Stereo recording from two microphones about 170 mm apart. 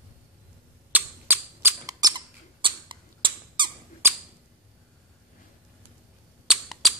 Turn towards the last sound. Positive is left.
turn(degrees=0)  # may be behind; listen again after turning